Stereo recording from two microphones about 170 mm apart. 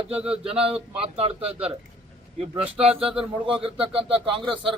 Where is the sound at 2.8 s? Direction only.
35° right (ahead or behind).